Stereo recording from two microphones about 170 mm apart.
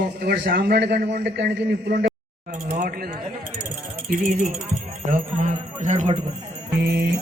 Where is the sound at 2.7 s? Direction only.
55° right (ahead or behind).